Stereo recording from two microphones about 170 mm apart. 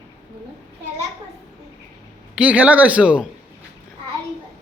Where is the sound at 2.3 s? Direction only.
5° right (ahead or behind).